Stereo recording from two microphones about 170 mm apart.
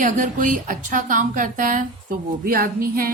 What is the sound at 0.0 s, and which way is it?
A woman's voice, 50° right (ahead or behind).